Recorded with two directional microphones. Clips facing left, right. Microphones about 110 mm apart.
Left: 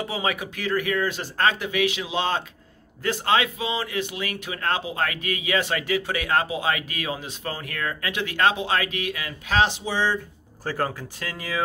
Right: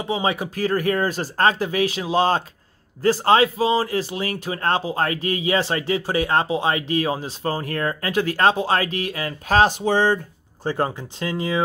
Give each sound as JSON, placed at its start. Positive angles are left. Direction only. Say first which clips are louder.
{"t": 0.0, "sound": "speech", "louder": "right 4 dB", "side_deg": -25}
{"t": 10.6, "sound": "speech", "louder": "right 4 dB", "side_deg": -20}